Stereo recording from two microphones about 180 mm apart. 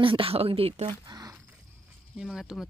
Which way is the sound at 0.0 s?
30° right (ahead or behind).